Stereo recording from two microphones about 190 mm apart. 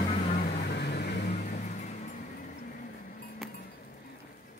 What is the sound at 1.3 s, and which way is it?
Vehicle, 40° left (ahead or behind).